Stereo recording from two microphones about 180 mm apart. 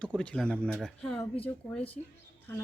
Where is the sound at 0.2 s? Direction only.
5° left (ahead or behind).